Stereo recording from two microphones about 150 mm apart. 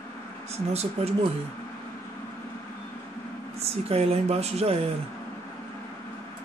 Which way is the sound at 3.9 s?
45° right (ahead or behind).